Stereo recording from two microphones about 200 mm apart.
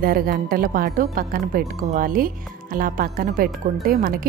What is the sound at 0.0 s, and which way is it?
A woman's voice, 45° right (ahead or behind).